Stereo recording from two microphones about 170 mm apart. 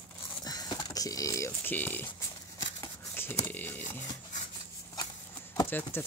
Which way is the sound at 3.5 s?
10° left (ahead or behind).